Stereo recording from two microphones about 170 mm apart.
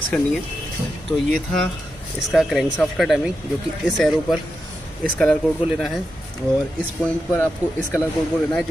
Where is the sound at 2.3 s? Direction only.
5° right (ahead or behind).